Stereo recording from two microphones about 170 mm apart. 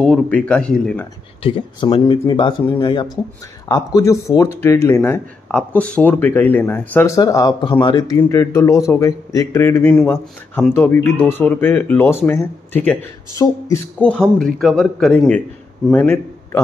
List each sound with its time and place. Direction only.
0.0 s a man's voice: 5° left (ahead or behind)
1.4 s speech: 30° left (ahead or behind); by 13.0 s 10° left (ahead or behind)
13.4 s speech: 25° left (ahead or behind)
13.9 s a man's voice: 5° left (ahead or behind)